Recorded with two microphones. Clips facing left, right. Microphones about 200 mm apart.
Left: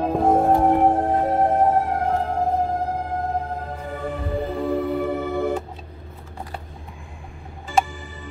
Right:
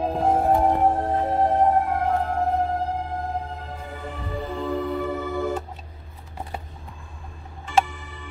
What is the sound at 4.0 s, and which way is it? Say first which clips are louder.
Music: left 6 dB; 55° left (ahead or behind).